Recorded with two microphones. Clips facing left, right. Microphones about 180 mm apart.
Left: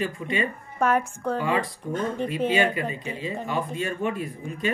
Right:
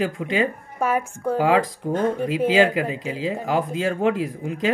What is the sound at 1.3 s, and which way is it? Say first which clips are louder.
Speech: right 7 dB; 90° right.